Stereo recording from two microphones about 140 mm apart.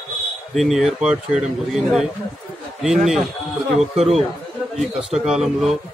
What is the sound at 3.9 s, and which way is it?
Speech, 45° right (ahead or behind).